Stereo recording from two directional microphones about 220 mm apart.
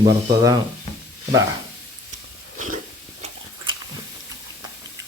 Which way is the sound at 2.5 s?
35° right (ahead or behind).